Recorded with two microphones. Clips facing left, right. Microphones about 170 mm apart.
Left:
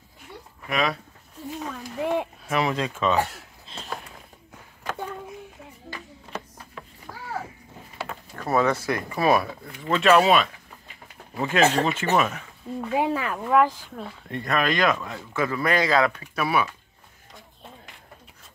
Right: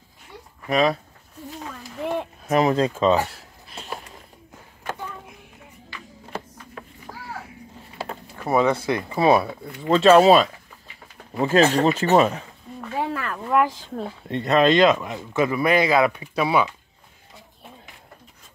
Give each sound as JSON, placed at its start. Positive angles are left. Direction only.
{"t": 0.7, "sound": "a man's voice", "side_deg": -35}
{"t": 1.8, "sound": "speech", "side_deg": 15}
{"t": 2.5, "sound": "a man's voice", "side_deg": -40}
{"t": 8.5, "sound": "a man's voice", "side_deg": -15}
{"t": 12.9, "sound": "speech", "side_deg": 15}
{"t": 13.5, "sound": "speech", "side_deg": -5}
{"t": 13.7, "sound": "speech", "side_deg": -30}